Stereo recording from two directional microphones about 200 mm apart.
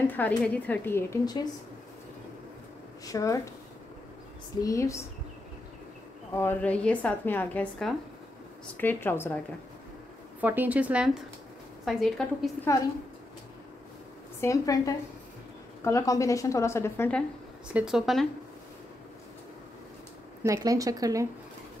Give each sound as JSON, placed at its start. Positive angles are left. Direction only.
{"t": 0.0, "sound": "a woman's voice", "side_deg": 10}
{"t": 3.1, "sound": "a woman's voice", "side_deg": 15}
{"t": 4.6, "sound": "a woman's voice", "side_deg": 15}
{"t": 6.3, "sound": "a woman's voice", "side_deg": 10}
{"t": 10.4, "sound": "a woman's voice", "side_deg": -10}
{"t": 12.7, "sound": "a woman's voice", "side_deg": 15}
{"t": 14.4, "sound": "a woman's voice", "side_deg": 15}
{"t": 17.7, "sound": "speech", "side_deg": -5}
{"t": 20.4, "sound": "a woman's voice", "side_deg": -15}